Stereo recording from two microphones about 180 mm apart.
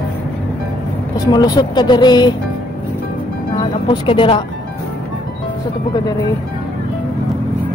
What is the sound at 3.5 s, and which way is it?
Speech, 25° left (ahead or behind).